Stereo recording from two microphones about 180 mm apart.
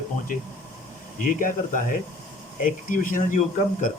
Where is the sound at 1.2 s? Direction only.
50° left (ahead or behind).